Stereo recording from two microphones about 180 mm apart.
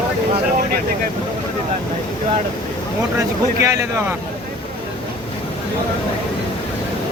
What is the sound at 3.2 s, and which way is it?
Speech, 15° right (ahead or behind).